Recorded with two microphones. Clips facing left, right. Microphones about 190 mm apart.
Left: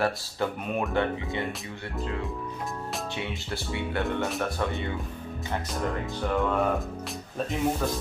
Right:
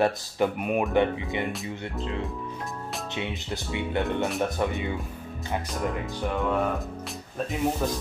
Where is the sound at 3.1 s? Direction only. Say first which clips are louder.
Right 1 dB; 20° right (ahead or behind).